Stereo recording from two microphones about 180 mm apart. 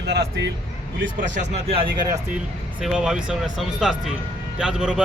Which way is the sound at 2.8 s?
5° right (ahead or behind).